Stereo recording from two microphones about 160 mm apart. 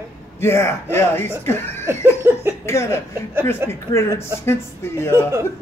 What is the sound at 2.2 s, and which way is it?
Speech, 15° right (ahead or behind).